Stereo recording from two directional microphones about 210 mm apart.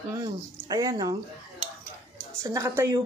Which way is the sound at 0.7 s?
15° right (ahead or behind).